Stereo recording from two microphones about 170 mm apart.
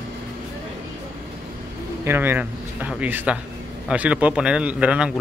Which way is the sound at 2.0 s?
15° right (ahead or behind).